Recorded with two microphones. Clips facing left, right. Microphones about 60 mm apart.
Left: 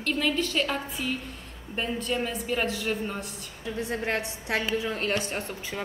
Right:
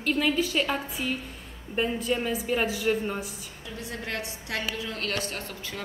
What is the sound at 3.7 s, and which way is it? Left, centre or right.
Speech, left.